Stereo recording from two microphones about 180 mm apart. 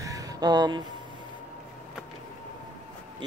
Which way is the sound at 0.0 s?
20° right (ahead or behind).